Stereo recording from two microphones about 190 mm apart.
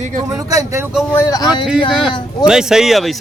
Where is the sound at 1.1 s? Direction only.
15° left (ahead or behind).